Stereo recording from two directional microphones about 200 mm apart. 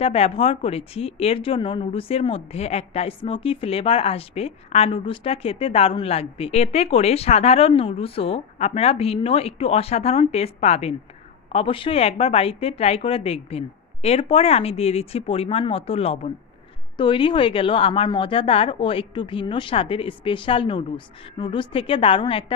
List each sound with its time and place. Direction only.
0.0 s speech: 30° left (ahead or behind)